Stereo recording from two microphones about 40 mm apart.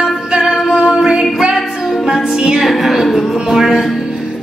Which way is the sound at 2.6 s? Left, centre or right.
Centre.